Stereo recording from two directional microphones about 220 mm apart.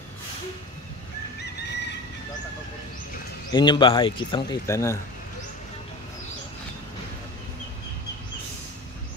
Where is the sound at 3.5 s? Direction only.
20° left (ahead or behind).